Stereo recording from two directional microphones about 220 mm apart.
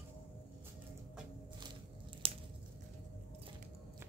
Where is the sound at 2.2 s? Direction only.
25° right (ahead or behind).